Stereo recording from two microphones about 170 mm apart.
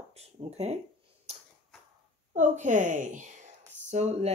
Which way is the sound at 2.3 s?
45° right (ahead or behind).